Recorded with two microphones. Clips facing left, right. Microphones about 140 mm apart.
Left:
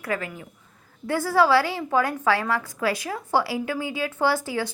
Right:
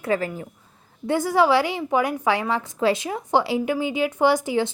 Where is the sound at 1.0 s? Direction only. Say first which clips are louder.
Right 1 dB; 20° right (ahead or behind).